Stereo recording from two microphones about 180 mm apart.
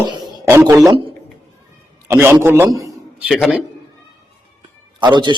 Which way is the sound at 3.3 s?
Centre (ahead or behind).